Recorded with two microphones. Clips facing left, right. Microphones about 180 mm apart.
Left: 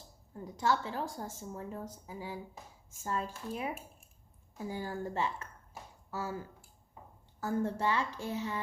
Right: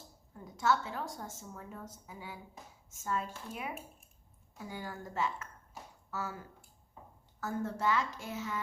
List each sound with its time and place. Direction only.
0.6 s a woman's voice: 30° left (ahead or behind)